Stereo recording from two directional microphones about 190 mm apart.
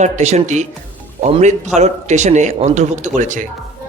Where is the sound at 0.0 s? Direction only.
35° right (ahead or behind).